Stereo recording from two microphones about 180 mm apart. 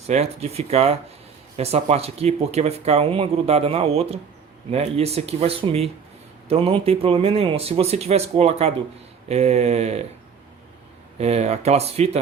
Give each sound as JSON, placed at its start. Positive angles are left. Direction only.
{"t": 0.1, "sound": "speech", "side_deg": -35}
{"t": 11.2, "sound": "speech", "side_deg": -35}